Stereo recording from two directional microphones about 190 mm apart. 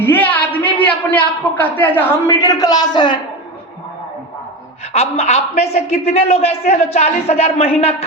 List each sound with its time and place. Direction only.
0.0 s a sound: 10° left (ahead or behind)
0.9 s a man's voice: 10° left (ahead or behind)
4.9 s a man's voice: 35° left (ahead or behind)